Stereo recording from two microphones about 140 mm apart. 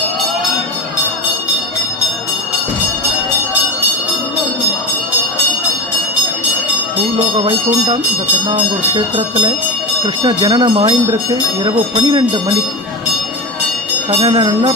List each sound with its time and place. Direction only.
8.4 s speech: 40° right (ahead or behind)
14.1 s speech: 35° right (ahead or behind)